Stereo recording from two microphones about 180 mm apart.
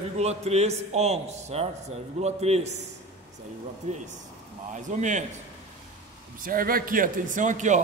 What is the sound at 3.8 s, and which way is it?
A man's voice, 40° right (ahead or behind).